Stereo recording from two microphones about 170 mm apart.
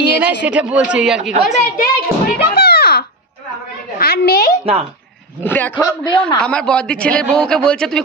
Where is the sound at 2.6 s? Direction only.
70° left (ahead or behind).